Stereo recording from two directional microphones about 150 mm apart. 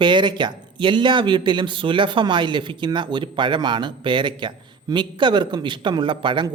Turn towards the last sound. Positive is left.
turn(degrees=-30)  # may be behind; listen again after turning